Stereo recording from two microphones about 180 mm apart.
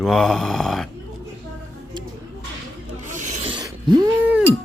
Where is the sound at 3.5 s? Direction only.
25° right (ahead or behind).